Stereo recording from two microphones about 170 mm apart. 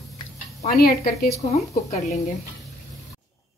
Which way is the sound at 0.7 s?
60° left (ahead or behind).